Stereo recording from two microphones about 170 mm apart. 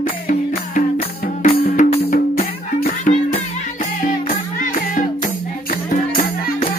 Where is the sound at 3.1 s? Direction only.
60° left (ahead or behind).